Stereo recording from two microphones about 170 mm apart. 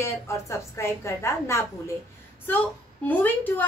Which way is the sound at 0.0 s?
15° left (ahead or behind).